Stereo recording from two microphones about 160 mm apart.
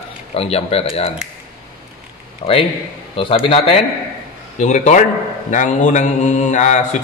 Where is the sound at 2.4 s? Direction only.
40° left (ahead or behind).